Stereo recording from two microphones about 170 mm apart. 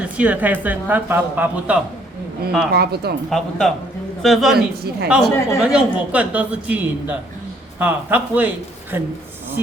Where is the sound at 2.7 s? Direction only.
70° right (ahead or behind).